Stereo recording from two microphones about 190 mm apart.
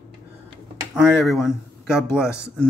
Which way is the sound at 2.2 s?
15° left (ahead or behind).